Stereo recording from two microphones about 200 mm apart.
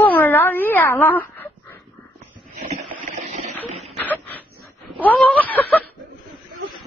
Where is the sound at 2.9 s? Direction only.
40° right (ahead or behind).